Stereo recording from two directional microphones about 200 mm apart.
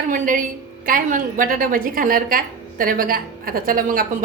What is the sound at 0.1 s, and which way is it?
A woman's voice, 40° right (ahead or behind).